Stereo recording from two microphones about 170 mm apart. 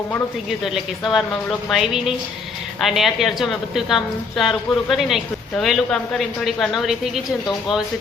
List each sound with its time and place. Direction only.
0.6 s a woman's voice: centre (ahead or behind)